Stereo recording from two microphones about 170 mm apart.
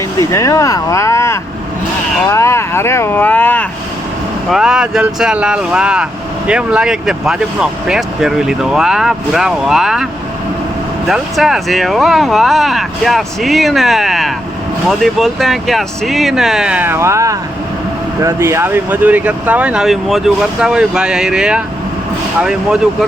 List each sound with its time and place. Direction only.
0.2 s speech: 20° left (ahead or behind)
2.3 s vehicle: 15° left (ahead or behind)
4.5 s speech: 5° right (ahead or behind)
11.1 s speech: centre (ahead or behind)